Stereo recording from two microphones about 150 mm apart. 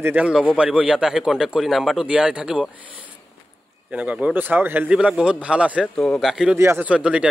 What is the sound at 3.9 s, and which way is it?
A man's voice, 10° right (ahead or behind).